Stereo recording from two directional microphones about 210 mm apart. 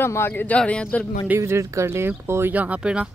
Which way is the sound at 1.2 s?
15° right (ahead or behind).